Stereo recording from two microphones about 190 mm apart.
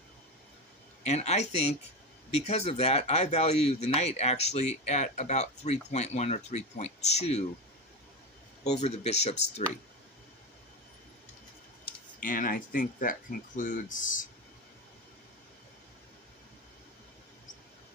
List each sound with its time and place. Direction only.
1.0 s speech: 35° left (ahead or behind)
8.8 s speech: 35° left (ahead or behind)
12.2 s speech: 45° left (ahead or behind)